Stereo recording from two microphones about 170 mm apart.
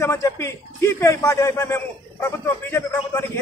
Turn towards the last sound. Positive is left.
turn(degrees=10)  # may be behind; listen again after turning